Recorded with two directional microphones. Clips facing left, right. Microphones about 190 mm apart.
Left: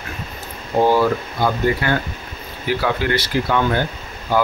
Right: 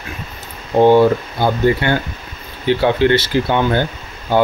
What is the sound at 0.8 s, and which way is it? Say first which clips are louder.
Speech: right 6 dB; 25° right (ahead or behind).